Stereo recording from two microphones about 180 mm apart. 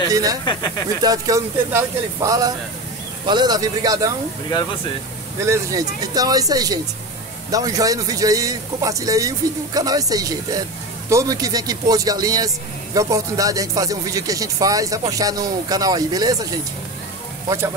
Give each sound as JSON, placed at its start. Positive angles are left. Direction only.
{"t": 0.1, "sound": "speech", "side_deg": -20}
{"t": 5.4, "sound": "speech", "side_deg": -15}